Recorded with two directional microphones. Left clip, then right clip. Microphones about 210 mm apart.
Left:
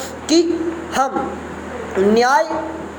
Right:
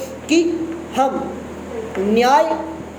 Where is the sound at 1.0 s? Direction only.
15° left (ahead or behind).